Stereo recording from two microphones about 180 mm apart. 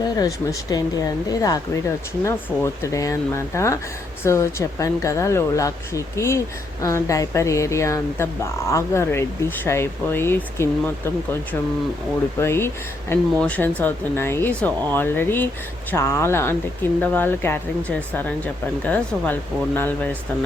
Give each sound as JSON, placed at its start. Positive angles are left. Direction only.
{"t": 0.2, "sound": "speech", "side_deg": 20}
{"t": 12.4, "sound": "speech", "side_deg": 15}